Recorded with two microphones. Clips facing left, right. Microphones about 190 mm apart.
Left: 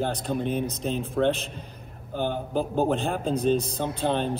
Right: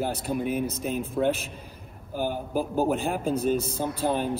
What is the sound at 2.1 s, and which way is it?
Speech, 5° right (ahead or behind).